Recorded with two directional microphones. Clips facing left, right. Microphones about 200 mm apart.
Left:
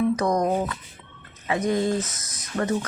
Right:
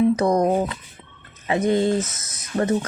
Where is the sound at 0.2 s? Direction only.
30° right (ahead or behind).